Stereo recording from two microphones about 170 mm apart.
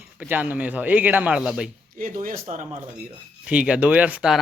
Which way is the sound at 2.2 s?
50° right (ahead or behind).